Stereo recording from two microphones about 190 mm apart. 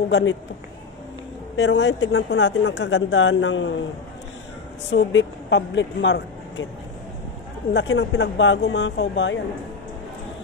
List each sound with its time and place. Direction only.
0.1 s a man's voice: 80° left
1.6 s speech: 70° left (ahead or behind)
4.9 s speech: 70° left (ahead or behind)
7.7 s speech: 70° left (ahead or behind)